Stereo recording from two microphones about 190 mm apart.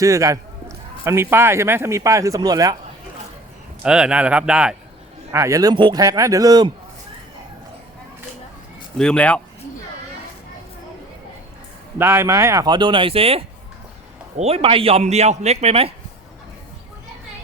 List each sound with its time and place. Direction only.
0.0 s speech: 15° right (ahead or behind)
3.8 s speech: 5° right (ahead or behind)
5.3 s speech: 15° right (ahead or behind)
9.0 s speech: 5° left (ahead or behind)
11.9 s a man's voice: 15° right (ahead or behind); by 15.9 s 35° right (ahead or behind)